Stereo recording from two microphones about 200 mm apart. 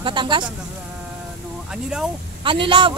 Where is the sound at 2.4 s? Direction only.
25° right (ahead or behind).